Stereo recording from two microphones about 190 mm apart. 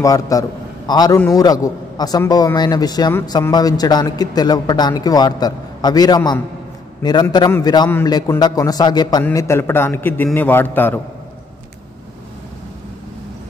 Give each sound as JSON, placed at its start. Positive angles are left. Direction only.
{"t": 0.0, "sound": "a man's voice", "side_deg": 20}